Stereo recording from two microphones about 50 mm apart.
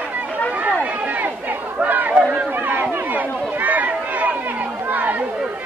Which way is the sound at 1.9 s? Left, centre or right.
Right.